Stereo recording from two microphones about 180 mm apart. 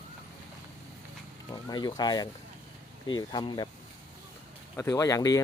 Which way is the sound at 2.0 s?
25° left (ahead or behind).